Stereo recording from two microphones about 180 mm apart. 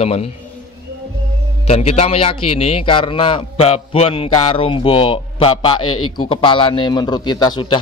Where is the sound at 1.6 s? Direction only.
35° left (ahead or behind).